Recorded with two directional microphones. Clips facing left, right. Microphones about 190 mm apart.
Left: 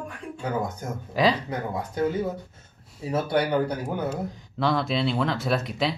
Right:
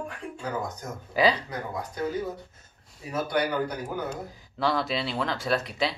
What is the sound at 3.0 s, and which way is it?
Speech, 30° left (ahead or behind).